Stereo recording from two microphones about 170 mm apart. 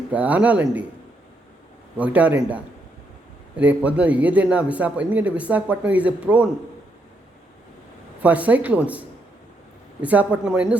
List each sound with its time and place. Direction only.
0.1 s a man's voice: 10° right (ahead or behind)
2.0 s a man's voice: 10° right (ahead or behind)
8.2 s a man's voice: 10° right (ahead or behind)